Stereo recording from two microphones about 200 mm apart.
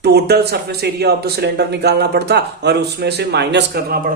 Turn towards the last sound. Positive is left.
turn(degrees=-55)  # may be behind; listen again after turning